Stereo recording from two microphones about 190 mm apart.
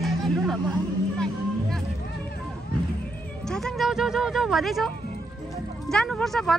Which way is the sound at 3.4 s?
Centre (ahead or behind).